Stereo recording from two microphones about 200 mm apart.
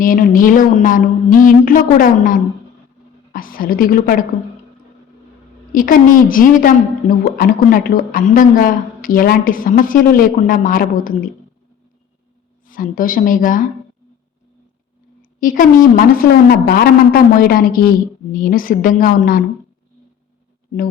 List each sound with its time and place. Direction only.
0.0 s a woman's voice: 45° left (ahead or behind)
5.7 s a woman's voice: 45° left (ahead or behind)
12.6 s a woman's voice: 45° left (ahead or behind)
15.2 s a woman's voice: 45° left (ahead or behind)